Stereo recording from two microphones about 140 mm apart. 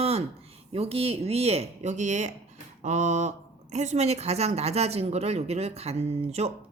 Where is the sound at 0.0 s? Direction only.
50° right (ahead or behind).